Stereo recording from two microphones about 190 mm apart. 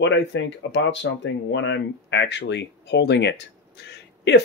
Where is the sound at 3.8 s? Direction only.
60° left (ahead or behind).